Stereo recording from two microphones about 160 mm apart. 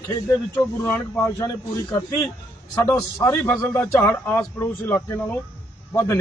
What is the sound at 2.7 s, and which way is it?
A man's voice, 20° left (ahead or behind).